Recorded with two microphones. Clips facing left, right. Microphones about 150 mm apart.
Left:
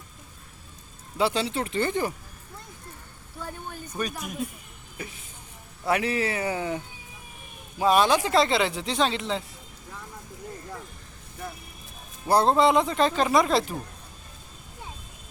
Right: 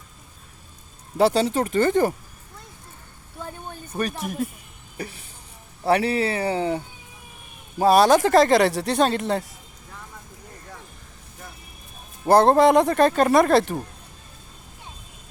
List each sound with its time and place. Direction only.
1.2 s speech: 40° right (ahead or behind)
3.9 s speech: 35° right (ahead or behind)
8.6 s speech: 65° right (ahead or behind); by 9.4 s 50° right (ahead or behind)
12.2 s speech: 50° right (ahead or behind)